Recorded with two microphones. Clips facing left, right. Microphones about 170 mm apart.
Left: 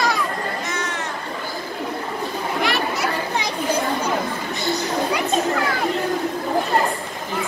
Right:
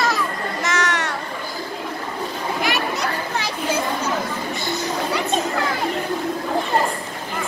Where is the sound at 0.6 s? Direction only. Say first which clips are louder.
Right 4 dB; 90° right.